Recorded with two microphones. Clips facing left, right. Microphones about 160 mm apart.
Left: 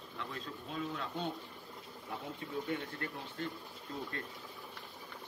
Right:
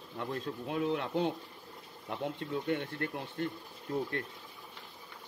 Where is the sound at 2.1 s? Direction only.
65° right (ahead or behind).